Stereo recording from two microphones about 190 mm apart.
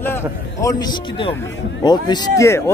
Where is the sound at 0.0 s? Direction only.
15° left (ahead or behind).